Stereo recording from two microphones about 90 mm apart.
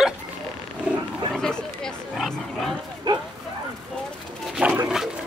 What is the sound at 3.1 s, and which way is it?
Speech, 55° right (ahead or behind).